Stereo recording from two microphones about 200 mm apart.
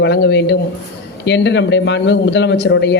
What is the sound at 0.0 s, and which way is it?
Speech, 60° left (ahead or behind).